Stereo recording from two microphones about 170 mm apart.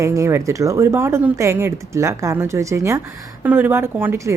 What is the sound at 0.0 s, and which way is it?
A woman's voice, 15° right (ahead or behind).